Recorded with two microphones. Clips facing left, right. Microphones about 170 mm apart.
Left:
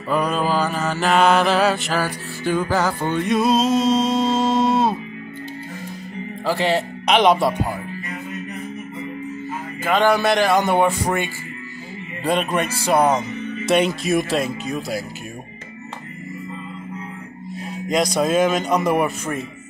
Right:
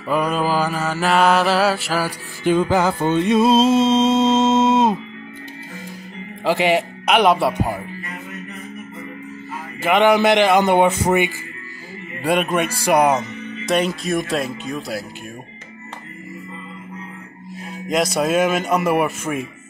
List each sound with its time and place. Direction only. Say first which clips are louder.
0.1 s mantra: right 1 dB; 10° right (ahead or behind)
2.5 s music: right 3 dB; 20° right (ahead or behind)
6.4 s mantra: right 3 dB; 20° right (ahead or behind)
7.1 s mantra: even; 5° right (ahead or behind)
9.8 s a man's voice: right 3 dB; 20° right (ahead or behind)
12.2 s mantra: right 2 dB; 10° right (ahead or behind)
13.7 s speech: left 1 dB; centre (ahead or behind)
17.8 s speech: even; 5° right (ahead or behind)